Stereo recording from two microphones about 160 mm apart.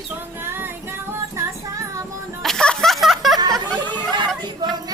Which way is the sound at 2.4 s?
5° left (ahead or behind).